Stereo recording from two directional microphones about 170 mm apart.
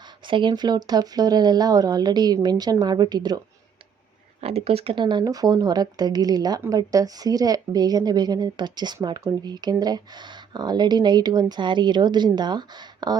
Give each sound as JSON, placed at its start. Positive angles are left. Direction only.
{"t": 0.3, "sound": "speech", "side_deg": -30}
{"t": 4.4, "sound": "speech", "side_deg": -35}